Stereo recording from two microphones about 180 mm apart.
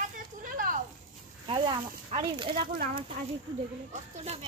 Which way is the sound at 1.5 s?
25° right (ahead or behind).